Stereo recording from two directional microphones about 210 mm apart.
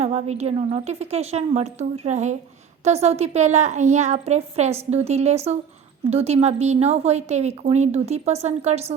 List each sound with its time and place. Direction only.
0.0 s a woman's voice: 30° right (ahead or behind)